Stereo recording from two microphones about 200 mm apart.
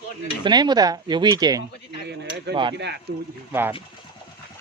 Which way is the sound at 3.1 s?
60° right (ahead or behind).